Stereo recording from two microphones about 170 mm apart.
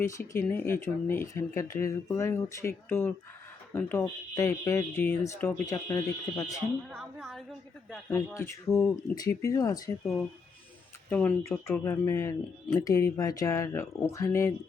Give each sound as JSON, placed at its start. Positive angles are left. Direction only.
{"t": 0.0, "sound": "speech", "side_deg": 10}
{"t": 6.9, "sound": "a woman's voice", "side_deg": 0}
{"t": 8.3, "sound": "speech", "side_deg": 15}
{"t": 8.7, "sound": "a woman's voice", "side_deg": 5}
{"t": 9.1, "sound": "speech", "side_deg": 20}
{"t": 11.1, "sound": "speech", "side_deg": 10}